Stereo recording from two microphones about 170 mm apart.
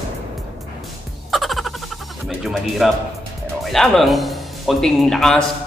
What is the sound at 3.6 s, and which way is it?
Speech, 5° left (ahead or behind).